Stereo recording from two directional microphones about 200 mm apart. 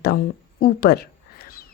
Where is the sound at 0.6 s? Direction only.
50° left (ahead or behind).